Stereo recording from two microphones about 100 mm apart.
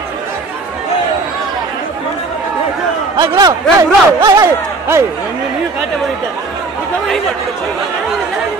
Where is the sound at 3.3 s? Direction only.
35° right (ahead or behind).